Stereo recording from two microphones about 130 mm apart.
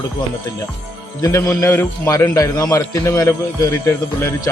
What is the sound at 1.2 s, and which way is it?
A man's voice, 25° left (ahead or behind).